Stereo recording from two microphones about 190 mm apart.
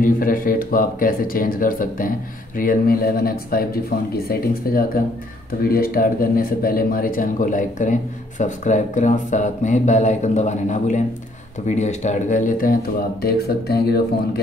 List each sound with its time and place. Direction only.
0.0 s speech: 50° left (ahead or behind)